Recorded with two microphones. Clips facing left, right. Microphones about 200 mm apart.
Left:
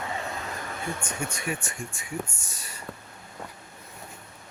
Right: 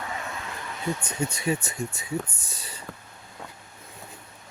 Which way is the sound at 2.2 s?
60° right (ahead or behind).